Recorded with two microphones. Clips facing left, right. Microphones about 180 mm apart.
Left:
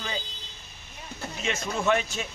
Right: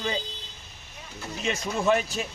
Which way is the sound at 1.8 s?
35° right (ahead or behind).